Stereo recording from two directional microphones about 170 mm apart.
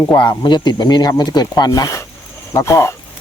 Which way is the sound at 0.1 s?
25° left (ahead or behind).